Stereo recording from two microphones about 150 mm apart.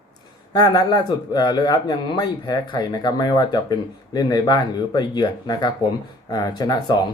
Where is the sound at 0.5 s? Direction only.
25° left (ahead or behind).